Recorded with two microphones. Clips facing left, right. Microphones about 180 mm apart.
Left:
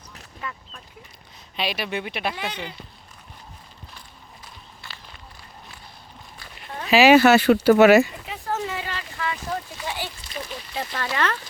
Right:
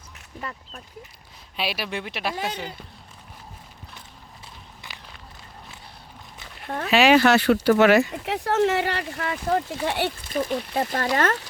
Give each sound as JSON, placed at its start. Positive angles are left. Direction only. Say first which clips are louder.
{"t": 0.4, "sound": "speech", "louder": "even", "side_deg": -35}
{"t": 1.5, "sound": "speech", "louder": "left 1 dB", "side_deg": -5}
{"t": 2.3, "sound": "speech", "louder": "right 2 dB", "side_deg": -45}
{"t": 4.8, "sound": "walk", "louder": "even", "side_deg": -15}
{"t": 6.7, "sound": "speech", "louder": "right 5 dB", "side_deg": -55}
{"t": 6.9, "sound": "speech", "louder": "left 3 dB", "side_deg": 5}
{"t": 8.2, "sound": "speech", "louder": "right 7 dB", "side_deg": -75}